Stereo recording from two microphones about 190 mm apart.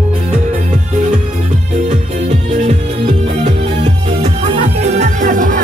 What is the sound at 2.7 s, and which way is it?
Music, 35° right (ahead or behind).